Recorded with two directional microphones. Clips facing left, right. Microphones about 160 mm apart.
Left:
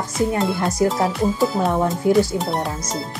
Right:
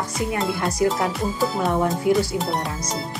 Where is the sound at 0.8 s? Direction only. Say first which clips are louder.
Left 1 dB; 30° left (ahead or behind).